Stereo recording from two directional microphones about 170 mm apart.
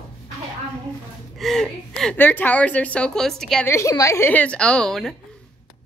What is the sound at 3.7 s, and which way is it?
A woman's voice, 20° left (ahead or behind).